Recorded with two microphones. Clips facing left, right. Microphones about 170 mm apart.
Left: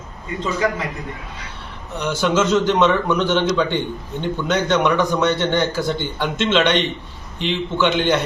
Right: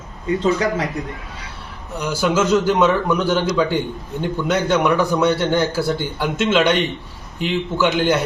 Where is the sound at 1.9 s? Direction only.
10° right (ahead or behind).